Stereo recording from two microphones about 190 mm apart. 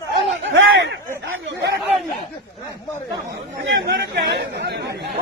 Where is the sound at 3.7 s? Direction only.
65° right (ahead or behind).